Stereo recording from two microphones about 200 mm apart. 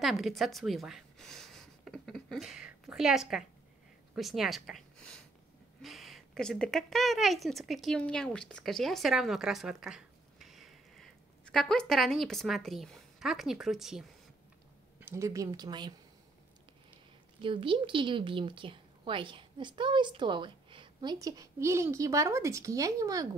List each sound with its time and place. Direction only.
0.0 s speech: centre (ahead or behind)
15.0 s speech: 15° right (ahead or behind)
17.4 s a woman's voice: 25° right (ahead or behind)